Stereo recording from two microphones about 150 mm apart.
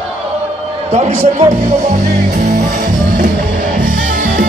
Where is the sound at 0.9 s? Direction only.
45° right (ahead or behind); by 3.2 s 60° right (ahead or behind).